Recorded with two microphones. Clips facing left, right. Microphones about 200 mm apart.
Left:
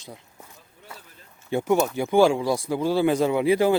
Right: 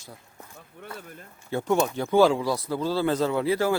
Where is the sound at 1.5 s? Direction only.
10° left (ahead or behind).